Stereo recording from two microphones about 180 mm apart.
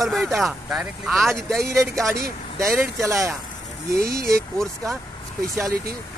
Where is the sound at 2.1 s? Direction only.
15° right (ahead or behind).